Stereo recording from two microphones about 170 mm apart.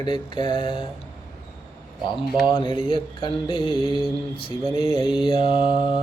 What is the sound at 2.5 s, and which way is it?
Mantra, 30° left (ahead or behind).